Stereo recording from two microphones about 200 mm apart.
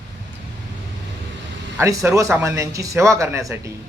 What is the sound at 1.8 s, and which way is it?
A man's voice, 15° right (ahead or behind).